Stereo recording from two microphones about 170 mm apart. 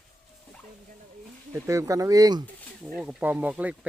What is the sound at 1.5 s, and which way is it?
Speech, 15° right (ahead or behind).